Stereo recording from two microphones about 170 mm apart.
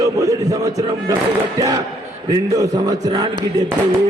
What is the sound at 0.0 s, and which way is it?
A man's voice, 20° right (ahead or behind).